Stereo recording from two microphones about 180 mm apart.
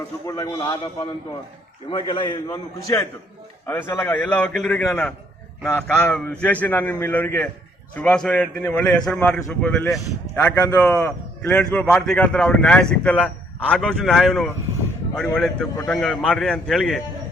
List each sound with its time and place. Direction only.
0.3 s a man's voice: 20° left (ahead or behind)
1.9 s a man's voice: 25° left (ahead or behind); by 17.0 s centre (ahead or behind)